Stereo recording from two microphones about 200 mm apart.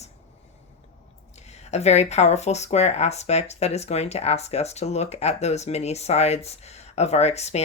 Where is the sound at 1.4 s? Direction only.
35° left (ahead or behind).